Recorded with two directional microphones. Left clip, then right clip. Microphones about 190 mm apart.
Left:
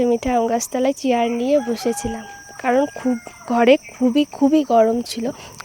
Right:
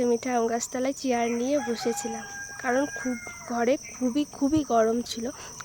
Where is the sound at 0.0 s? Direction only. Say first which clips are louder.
Left 7 dB; 30° left (ahead or behind).